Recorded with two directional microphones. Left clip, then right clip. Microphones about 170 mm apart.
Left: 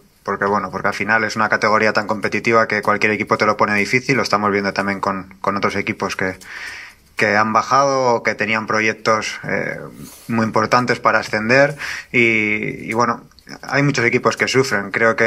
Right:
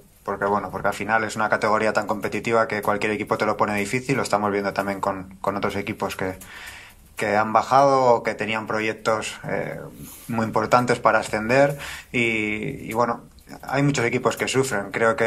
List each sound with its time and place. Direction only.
0.2 s a man's voice: 20° left (ahead or behind)